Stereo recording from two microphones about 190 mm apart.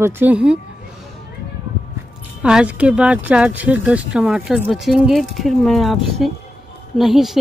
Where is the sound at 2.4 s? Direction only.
5° right (ahead or behind).